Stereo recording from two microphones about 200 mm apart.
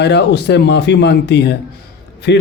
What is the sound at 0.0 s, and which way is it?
A man's voice, 55° left (ahead or behind).